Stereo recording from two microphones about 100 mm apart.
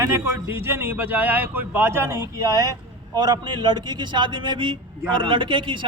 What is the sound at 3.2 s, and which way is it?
A man's voice, 45° right (ahead or behind).